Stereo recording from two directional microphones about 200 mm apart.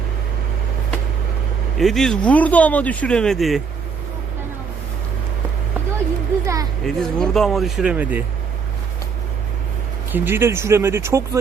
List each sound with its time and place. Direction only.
1.8 s speech: centre (ahead or behind)
6.4 s a sound: 15° right (ahead or behind)
6.8 s speech: centre (ahead or behind)
10.1 s speech: 10° right (ahead or behind)